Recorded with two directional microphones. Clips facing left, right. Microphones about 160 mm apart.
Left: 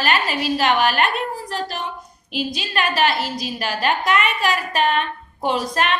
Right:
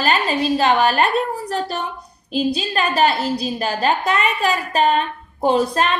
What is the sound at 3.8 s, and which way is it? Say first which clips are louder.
A woman's voice: even; 35° right (ahead or behind).